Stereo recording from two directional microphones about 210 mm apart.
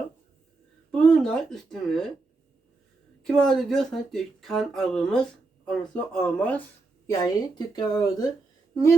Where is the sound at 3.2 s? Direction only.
Centre (ahead or behind).